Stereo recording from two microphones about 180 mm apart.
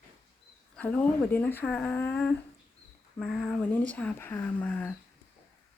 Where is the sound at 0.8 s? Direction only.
10° left (ahead or behind).